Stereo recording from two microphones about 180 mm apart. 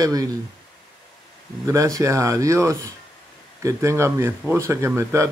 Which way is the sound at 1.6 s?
15° right (ahead or behind).